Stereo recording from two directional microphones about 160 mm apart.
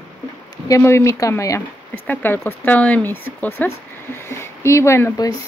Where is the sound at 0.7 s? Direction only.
15° left (ahead or behind).